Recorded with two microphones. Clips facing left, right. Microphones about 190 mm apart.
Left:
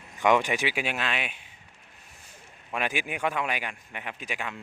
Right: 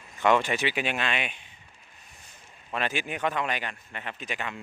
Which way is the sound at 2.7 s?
10° left (ahead or behind).